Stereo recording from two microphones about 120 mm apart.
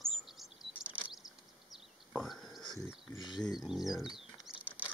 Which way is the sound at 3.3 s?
35° left (ahead or behind).